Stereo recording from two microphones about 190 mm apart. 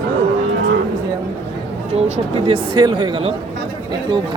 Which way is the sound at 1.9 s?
30° right (ahead or behind).